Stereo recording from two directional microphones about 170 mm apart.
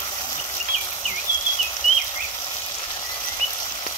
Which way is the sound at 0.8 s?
25° left (ahead or behind).